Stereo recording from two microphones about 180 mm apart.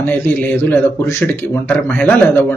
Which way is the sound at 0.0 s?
10° left (ahead or behind).